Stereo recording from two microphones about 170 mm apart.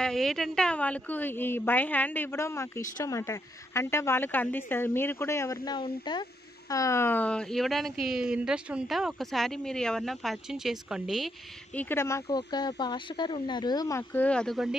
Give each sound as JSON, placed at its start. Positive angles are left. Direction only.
{"t": 0.0, "sound": "a woman's voice", "side_deg": 0}
{"t": 11.8, "sound": "speech", "side_deg": 15}